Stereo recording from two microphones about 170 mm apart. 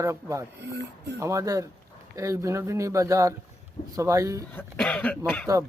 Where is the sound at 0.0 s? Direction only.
15° right (ahead or behind).